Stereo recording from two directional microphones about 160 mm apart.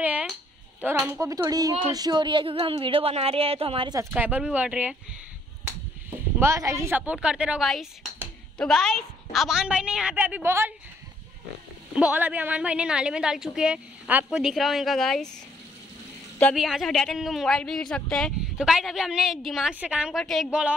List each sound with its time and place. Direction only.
0.0 s a sound: 10° right (ahead or behind)
0.7 s speech: 10° right (ahead or behind)
1.2 s a child's voice: 20° right (ahead or behind)
4.1 s a woman's voice: 10° right (ahead or behind)
6.4 s a woman's voice: 20° right (ahead or behind)
11.9 s a woman's voice: 10° right (ahead or behind)
16.5 s a woman's voice: centre (ahead or behind)